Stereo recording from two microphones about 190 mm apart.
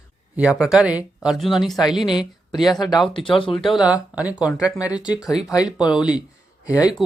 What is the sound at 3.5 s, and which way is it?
Speech, centre (ahead or behind).